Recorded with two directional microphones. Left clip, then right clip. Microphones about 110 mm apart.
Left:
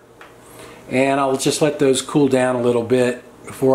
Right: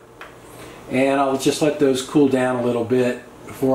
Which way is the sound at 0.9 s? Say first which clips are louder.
Left 1 dB; 70° left (ahead or behind).